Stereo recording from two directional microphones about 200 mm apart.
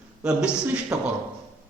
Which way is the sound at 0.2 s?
5° right (ahead or behind).